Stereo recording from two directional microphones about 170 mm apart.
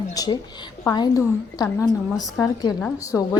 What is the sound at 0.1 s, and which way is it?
A woman's voice, 20° left (ahead or behind).